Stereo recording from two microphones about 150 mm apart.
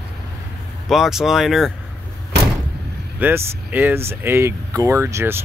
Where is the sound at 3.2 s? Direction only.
10° right (ahead or behind).